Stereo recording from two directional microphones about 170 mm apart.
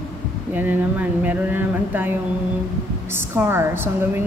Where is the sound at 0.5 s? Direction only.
10° right (ahead or behind).